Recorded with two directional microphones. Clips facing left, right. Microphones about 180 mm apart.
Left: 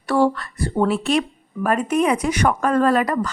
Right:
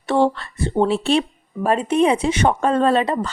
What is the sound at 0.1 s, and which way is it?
Speech, 25° right (ahead or behind).